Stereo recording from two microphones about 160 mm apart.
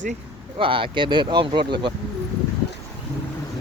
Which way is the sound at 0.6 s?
35° right (ahead or behind).